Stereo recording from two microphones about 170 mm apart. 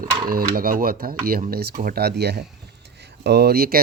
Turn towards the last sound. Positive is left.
turn(degrees=-60)  # may be behind; listen again after turning